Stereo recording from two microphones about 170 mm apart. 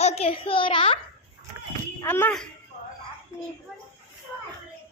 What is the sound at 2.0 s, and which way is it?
Speech, 10° left (ahead or behind).